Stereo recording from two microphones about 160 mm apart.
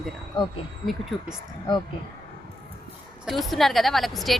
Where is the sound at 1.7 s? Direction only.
30° left (ahead or behind).